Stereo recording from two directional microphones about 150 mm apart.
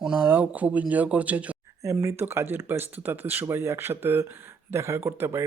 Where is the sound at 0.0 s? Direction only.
10° right (ahead or behind).